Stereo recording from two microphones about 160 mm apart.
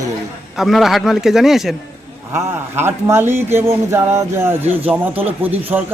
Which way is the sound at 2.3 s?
15° right (ahead or behind).